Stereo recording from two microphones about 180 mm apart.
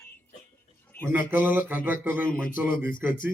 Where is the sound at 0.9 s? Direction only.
10° left (ahead or behind).